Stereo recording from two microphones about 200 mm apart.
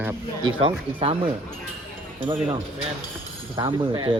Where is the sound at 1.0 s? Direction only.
25° right (ahead or behind).